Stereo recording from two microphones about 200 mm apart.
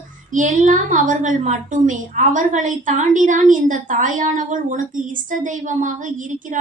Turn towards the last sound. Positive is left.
turn(degrees=-40)  # may be behind; listen again after turning